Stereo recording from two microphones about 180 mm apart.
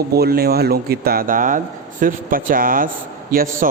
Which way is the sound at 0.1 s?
60° right (ahead or behind).